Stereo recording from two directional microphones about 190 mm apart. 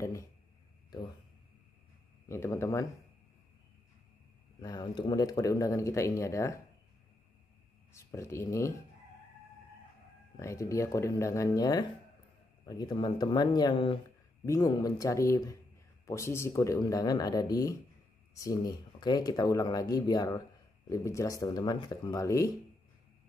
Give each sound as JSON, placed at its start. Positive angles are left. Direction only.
{"t": 2.2, "sound": "speech", "side_deg": 15}
{"t": 4.6, "sound": "speech", "side_deg": 20}
{"t": 7.9, "sound": "speech", "side_deg": 15}
{"t": 10.3, "sound": "speech", "side_deg": 15}